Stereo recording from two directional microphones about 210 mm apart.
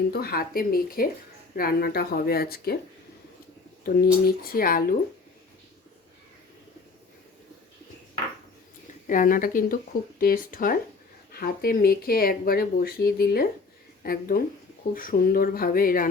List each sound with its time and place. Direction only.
0.1 s speech: 45° left (ahead or behind)
3.8 s speech: 45° left (ahead or behind)
9.0 s speech: 40° left (ahead or behind)